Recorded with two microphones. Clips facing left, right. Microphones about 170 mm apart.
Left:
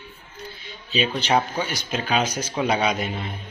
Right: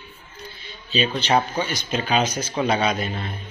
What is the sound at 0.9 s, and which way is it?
Speech, 10° left (ahead or behind).